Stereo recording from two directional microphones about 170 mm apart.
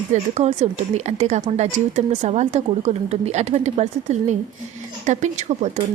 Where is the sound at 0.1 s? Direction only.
40° right (ahead or behind).